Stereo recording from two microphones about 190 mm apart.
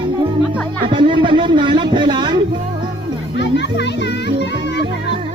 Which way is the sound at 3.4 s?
65° left (ahead or behind).